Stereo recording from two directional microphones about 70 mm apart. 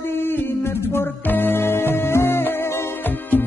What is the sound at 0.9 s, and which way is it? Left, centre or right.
Music, left.